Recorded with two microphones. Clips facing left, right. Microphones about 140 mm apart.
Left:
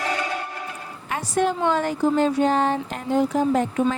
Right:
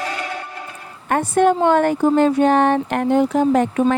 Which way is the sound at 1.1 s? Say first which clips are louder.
Right 7 dB; 55° right (ahead or behind).